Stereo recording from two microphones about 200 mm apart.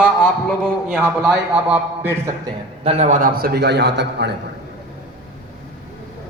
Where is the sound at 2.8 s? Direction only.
35° right (ahead or behind); by 4.3 s 55° right (ahead or behind).